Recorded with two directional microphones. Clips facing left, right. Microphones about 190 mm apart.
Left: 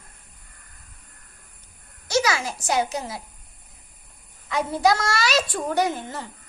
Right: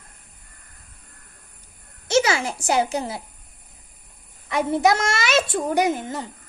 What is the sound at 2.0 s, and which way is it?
A child's voice, 25° right (ahead or behind).